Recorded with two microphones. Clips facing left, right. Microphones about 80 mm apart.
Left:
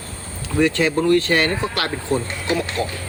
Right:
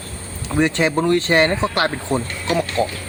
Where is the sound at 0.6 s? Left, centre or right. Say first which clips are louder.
Even; right.